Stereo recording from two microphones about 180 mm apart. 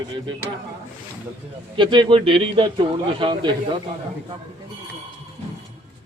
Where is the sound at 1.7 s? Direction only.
25° right (ahead or behind).